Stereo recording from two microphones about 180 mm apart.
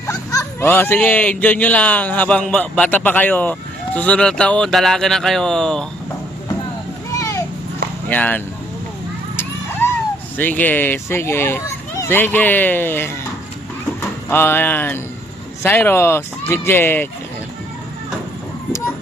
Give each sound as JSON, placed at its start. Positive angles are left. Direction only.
{"t": 0.1, "sound": "speech", "side_deg": 20}
{"t": 7.1, "sound": "children playing", "side_deg": 15}
{"t": 8.1, "sound": "speech", "side_deg": 10}
{"t": 9.3, "sound": "vehicle", "side_deg": 10}
{"t": 10.3, "sound": "speech", "side_deg": 10}